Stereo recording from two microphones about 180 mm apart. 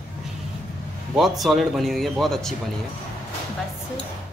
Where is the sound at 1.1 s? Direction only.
Centre (ahead or behind).